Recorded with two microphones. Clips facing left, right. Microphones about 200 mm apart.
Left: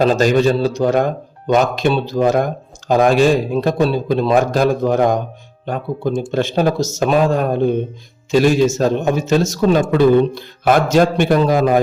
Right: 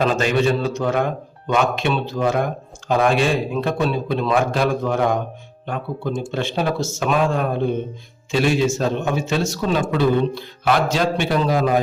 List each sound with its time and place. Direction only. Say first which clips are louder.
0.0 s speech: left 5 dB; 35° left (ahead or behind)